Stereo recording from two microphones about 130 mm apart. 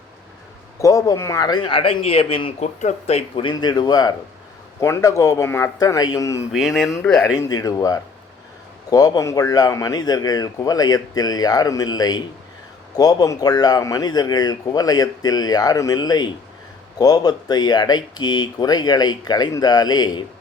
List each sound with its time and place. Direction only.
0.8 s speech: 25° left (ahead or behind); by 3.2 s 55° left (ahead or behind)
3.3 s a man's voice: 35° left (ahead or behind)
6.5 s speech: centre (ahead or behind)
7.3 s a man's voice: 30° left (ahead or behind)